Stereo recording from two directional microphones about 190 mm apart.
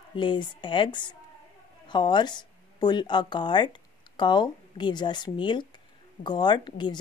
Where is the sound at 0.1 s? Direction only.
25° left (ahead or behind).